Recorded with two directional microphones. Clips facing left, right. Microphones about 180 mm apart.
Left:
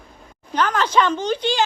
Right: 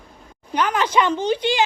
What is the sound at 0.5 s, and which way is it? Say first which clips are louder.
Speech: even; 10° right (ahead or behind).